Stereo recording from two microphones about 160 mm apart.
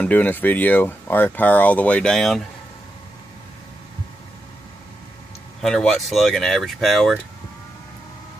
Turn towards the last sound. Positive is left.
turn(degrees=0)  # may be behind; listen again after turning